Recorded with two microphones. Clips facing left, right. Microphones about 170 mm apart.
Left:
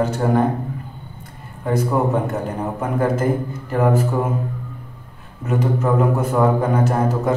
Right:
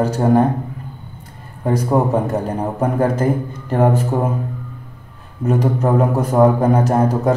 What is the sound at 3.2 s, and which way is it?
Speech, 35° right (ahead or behind).